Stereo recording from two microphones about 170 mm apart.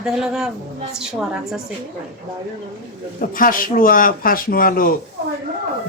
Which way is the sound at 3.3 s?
55° left (ahead or behind).